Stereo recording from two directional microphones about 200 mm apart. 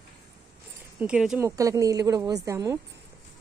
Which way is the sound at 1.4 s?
15° right (ahead or behind).